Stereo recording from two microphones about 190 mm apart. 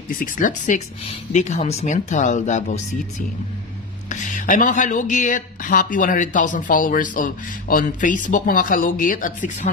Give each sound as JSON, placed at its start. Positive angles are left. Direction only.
{"t": 0.1, "sound": "speech", "side_deg": 45}